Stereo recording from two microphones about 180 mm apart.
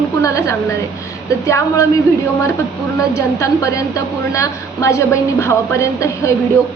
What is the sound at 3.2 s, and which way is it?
A woman's voice, 15° left (ahead or behind).